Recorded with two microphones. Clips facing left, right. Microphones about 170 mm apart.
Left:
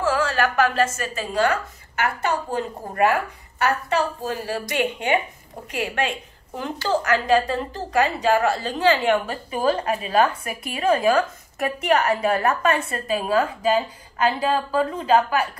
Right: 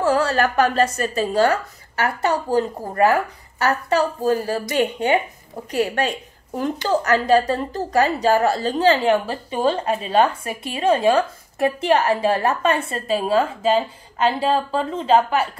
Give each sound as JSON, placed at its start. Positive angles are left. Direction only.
{"t": 0.0, "sound": "a woman's voice", "side_deg": -40}